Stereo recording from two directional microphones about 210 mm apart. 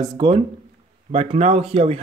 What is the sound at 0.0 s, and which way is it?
Speech, 20° right (ahead or behind).